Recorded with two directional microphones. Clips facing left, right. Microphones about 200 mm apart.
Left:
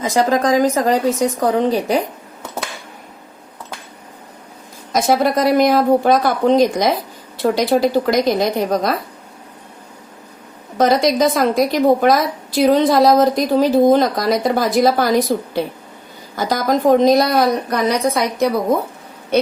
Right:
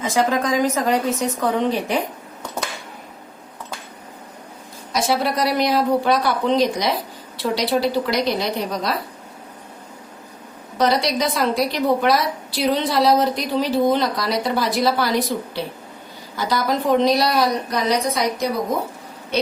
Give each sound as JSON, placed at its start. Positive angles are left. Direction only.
{"t": 0.0, "sound": "speech", "side_deg": 35}
{"t": 4.9, "sound": "a woman's voice", "side_deg": 45}
{"t": 10.8, "sound": "a woman's voice", "side_deg": 45}